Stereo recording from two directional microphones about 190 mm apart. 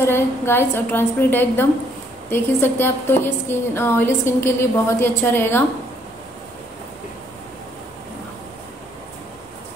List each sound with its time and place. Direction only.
0.0 s a woman's voice: 10° left (ahead or behind)